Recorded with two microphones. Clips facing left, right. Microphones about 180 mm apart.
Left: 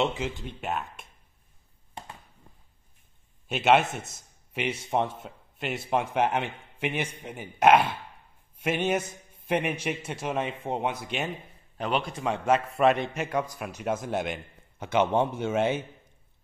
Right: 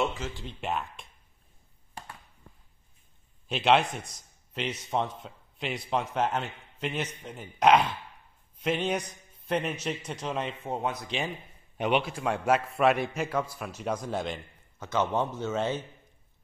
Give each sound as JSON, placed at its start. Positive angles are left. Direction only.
{"t": 0.0, "sound": "speech", "side_deg": 20}
{"t": 0.6, "sound": "a man's voice", "side_deg": 0}
{"t": 3.4, "sound": "a man's voice", "side_deg": 5}